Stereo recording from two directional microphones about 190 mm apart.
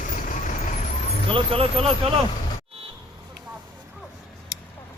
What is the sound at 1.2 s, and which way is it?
Speech, 30° right (ahead or behind).